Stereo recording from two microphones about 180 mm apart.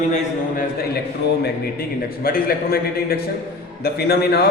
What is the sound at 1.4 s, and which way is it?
A man's voice, 55° left (ahead or behind).